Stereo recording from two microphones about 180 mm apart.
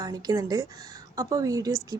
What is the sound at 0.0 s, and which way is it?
A woman's voice, 20° right (ahead or behind).